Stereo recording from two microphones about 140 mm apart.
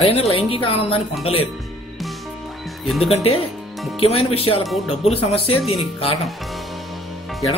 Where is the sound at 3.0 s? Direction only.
45° left (ahead or behind).